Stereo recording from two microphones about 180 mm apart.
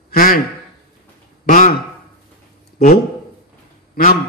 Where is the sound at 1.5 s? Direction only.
50° left (ahead or behind).